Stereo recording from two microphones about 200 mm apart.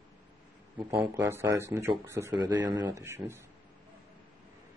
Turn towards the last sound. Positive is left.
turn(degrees=-10)  # may be behind; listen again after turning